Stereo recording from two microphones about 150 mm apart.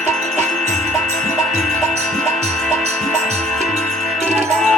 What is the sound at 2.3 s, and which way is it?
Music, 50° right (ahead or behind).